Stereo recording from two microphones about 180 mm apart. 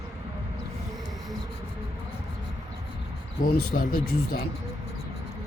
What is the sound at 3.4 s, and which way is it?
Speech, 55° left (ahead or behind).